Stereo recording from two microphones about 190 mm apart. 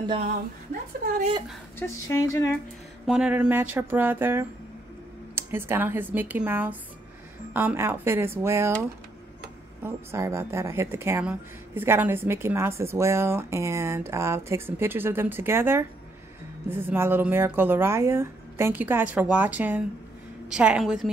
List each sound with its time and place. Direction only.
1.0 s speech: 45° right (ahead or behind)
1.8 s a woman's voice: 15° left (ahead or behind)
3.1 s a woman's voice: 5° right (ahead or behind)
9.8 s a woman's voice: 15° right (ahead or behind)